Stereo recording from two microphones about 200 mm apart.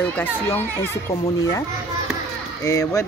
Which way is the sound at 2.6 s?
15° left (ahead or behind).